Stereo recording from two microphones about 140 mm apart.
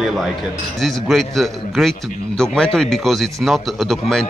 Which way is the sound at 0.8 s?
Centre (ahead or behind).